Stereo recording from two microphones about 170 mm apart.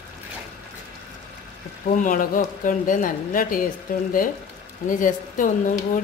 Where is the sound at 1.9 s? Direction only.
55° left (ahead or behind).